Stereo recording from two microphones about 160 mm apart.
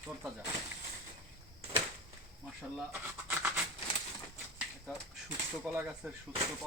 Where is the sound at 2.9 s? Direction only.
10° right (ahead or behind).